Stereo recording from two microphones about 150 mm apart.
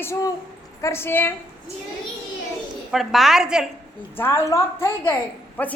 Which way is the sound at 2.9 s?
Centre (ahead or behind).